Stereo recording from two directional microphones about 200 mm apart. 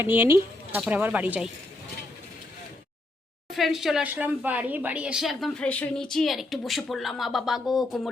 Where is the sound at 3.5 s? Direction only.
Centre (ahead or behind).